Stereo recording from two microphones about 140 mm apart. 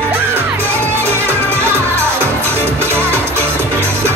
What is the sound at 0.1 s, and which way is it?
Music, 15° right (ahead or behind).